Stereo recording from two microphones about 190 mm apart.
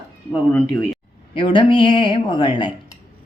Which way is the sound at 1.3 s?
25° left (ahead or behind).